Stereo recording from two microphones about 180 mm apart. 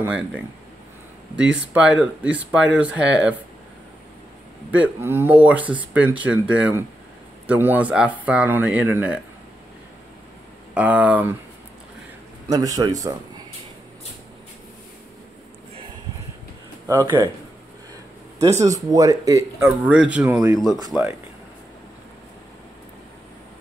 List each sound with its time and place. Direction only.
0.0 s speech: 5° right (ahead or behind)
4.6 s speech: 10° right (ahead or behind)
10.7 s speech: 10° right (ahead or behind)
12.4 s a man's voice: 20° right (ahead or behind)
16.8 s speech: 15° right (ahead or behind)
18.6 s speech: 20° right (ahead or behind)